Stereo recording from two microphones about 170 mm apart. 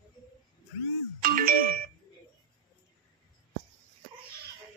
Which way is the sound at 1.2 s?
55° right (ahead or behind).